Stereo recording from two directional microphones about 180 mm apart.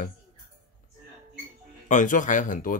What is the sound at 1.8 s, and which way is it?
Speech, 45° left (ahead or behind).